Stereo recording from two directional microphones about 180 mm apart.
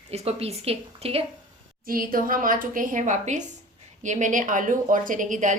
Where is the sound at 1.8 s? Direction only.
50° right (ahead or behind).